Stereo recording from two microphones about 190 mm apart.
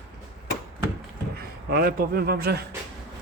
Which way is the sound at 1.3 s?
55° right (ahead or behind).